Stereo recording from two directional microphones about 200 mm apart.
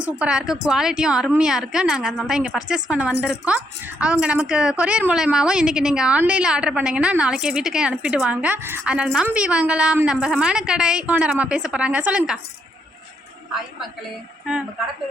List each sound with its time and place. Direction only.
0.0 s a woman's voice: 5° right (ahead or behind)